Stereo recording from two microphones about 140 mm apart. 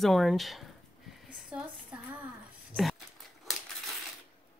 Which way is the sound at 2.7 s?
Centre (ahead or behind).